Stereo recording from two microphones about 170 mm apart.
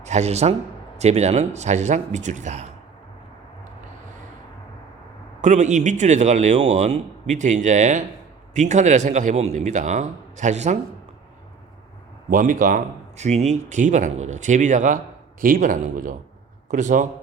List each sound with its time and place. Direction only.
0.0 s a man's voice: 40° right (ahead or behind)
5.4 s a man's voice: 45° right (ahead or behind)
12.3 s a man's voice: 50° right (ahead or behind)